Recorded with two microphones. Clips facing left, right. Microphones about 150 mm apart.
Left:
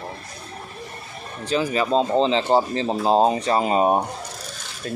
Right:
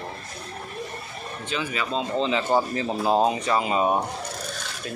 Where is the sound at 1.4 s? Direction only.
35° left (ahead or behind).